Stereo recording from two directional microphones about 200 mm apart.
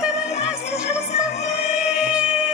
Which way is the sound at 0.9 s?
35° left (ahead or behind).